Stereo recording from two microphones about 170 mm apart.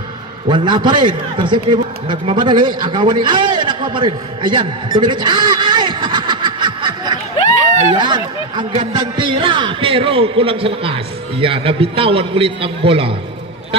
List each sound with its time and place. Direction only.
0.5 s a man's voice: 25° right (ahead or behind)